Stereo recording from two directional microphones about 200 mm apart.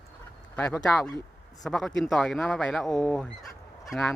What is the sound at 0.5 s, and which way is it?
Speech, 5° left (ahead or behind).